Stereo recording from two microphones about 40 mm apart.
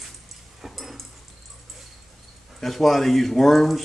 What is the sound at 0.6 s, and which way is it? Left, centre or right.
Dog, centre.